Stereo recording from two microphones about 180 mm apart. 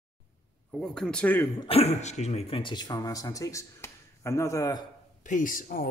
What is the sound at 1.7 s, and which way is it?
Speech, 35° left (ahead or behind).